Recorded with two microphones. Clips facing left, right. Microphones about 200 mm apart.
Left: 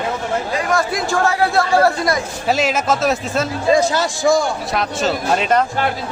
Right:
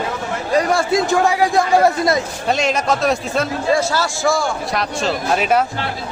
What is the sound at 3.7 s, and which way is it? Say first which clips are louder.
Speech: left 3 dB; 20° left (ahead or behind).